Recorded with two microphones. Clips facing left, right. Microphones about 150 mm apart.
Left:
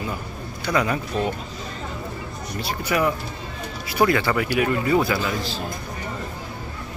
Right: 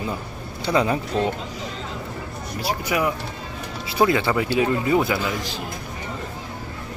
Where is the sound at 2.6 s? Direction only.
10° right (ahead or behind).